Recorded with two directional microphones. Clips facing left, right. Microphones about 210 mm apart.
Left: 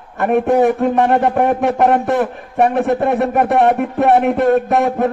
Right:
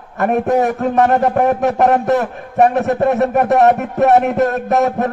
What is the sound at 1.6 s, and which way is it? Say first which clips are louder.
A man's voice: even; 40° right (ahead or behind).